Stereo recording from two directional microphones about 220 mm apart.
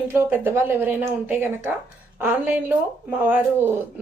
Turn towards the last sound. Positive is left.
turn(degrees=-10)  # may be behind; listen again after turning